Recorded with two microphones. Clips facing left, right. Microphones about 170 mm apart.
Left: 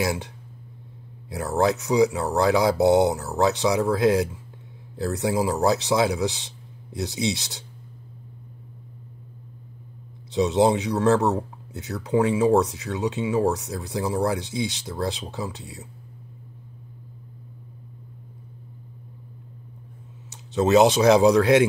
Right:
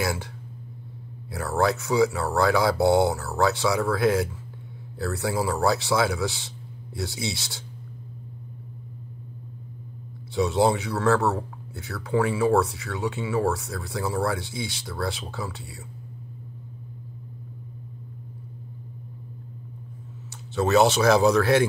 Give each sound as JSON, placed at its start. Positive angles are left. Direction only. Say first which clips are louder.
{"t": 0.0, "sound": "speech", "louder": "left 2 dB", "side_deg": 20}
{"t": 1.3, "sound": "speech", "louder": "left 2 dB", "side_deg": 20}
{"t": 10.3, "sound": "speech", "louder": "left 2 dB", "side_deg": 20}
{"t": 20.2, "sound": "speech", "louder": "left 3 dB", "side_deg": 20}